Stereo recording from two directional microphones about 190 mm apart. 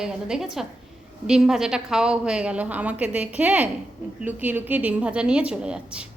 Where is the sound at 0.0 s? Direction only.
5° right (ahead or behind).